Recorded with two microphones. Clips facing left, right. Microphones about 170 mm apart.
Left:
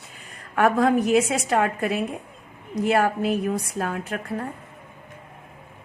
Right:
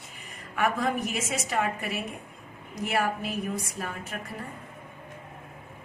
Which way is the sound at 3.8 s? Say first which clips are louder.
Left 8 dB; 70° left (ahead or behind).